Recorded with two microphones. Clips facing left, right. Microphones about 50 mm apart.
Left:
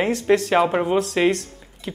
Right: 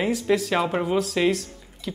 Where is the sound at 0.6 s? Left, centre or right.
Centre.